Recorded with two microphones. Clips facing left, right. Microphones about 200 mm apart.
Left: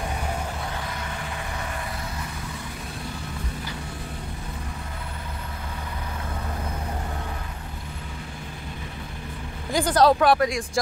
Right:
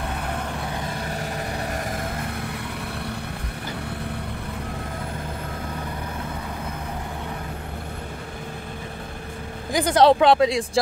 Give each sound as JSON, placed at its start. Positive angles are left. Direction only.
{"t": 1.9, "sound": "vehicle", "side_deg": -50}
{"t": 9.7, "sound": "speech", "side_deg": -15}